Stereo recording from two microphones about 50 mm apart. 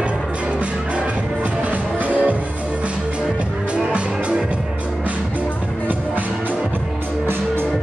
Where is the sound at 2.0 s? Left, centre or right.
Right.